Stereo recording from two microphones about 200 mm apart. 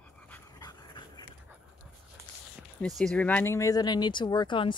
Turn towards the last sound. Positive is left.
turn(degrees=25)  # may be behind; listen again after turning